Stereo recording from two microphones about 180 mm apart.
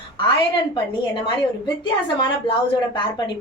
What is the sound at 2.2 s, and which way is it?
A woman's voice, 25° left (ahead or behind).